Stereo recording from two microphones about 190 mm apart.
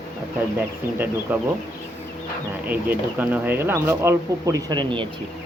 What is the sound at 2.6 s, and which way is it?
Speech, 10° right (ahead or behind).